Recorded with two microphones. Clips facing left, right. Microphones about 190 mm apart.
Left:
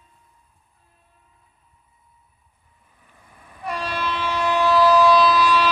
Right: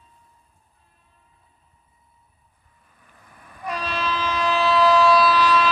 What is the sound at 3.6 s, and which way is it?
Train, 10° left (ahead or behind).